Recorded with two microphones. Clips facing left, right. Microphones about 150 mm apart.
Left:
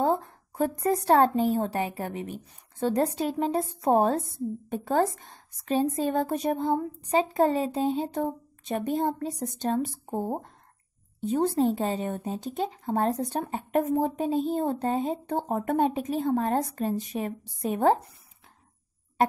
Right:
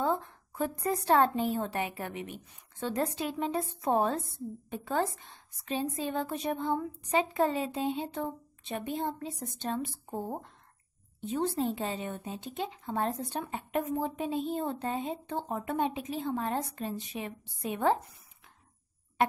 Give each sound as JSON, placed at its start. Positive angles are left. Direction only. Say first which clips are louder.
{"t": 0.0, "sound": "speech", "louder": "left 5 dB", "side_deg": 40}